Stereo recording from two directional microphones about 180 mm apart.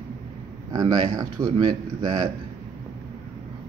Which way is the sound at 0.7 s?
20° right (ahead or behind).